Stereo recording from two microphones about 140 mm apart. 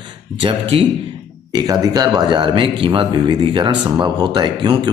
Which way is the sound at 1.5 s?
25° right (ahead or behind).